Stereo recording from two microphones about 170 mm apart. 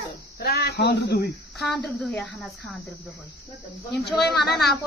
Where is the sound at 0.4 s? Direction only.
65° left (ahead or behind).